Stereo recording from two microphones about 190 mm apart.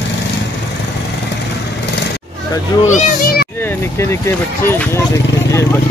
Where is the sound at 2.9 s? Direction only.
50° left (ahead or behind).